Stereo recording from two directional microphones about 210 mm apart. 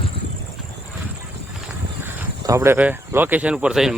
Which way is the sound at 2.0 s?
15° right (ahead or behind).